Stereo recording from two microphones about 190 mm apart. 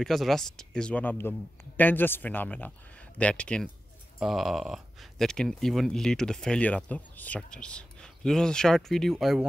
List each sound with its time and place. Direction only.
0.0 s speech: centre (ahead or behind)